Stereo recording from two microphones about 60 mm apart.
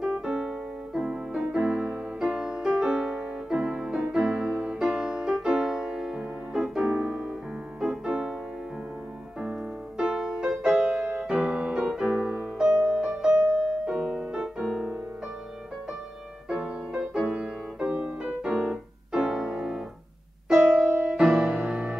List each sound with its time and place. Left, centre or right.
0.0 s piano: centre
2.8 s music: centre
6.9 s music: centre
9.4 s music: centre
12.5 s music: centre
16.4 s music: centre
19.1 s keyboard: centre
20.8 s music: centre